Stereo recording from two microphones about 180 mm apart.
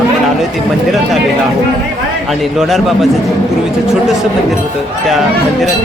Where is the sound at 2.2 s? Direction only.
Centre (ahead or behind).